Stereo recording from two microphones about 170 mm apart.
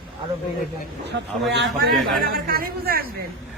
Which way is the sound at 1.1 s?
90° right.